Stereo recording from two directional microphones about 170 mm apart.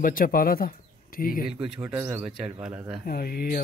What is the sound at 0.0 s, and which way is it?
Speech, 55° left (ahead or behind).